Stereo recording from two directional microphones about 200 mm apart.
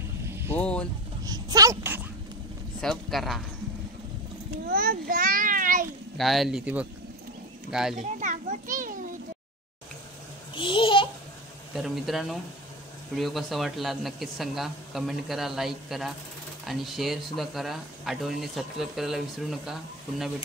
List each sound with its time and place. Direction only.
0.6 s a sound: 5° left (ahead or behind)
1.2 s a child's voice: 20° right (ahead or behind)
2.8 s speech: centre (ahead or behind)
4.6 s a child's voice: 50° right (ahead or behind)
6.1 s speech: centre (ahead or behind)
8.0 s children playing: 40° right (ahead or behind)
10.5 s a child's voice: 25° left (ahead or behind)
11.7 s speech: centre (ahead or behind)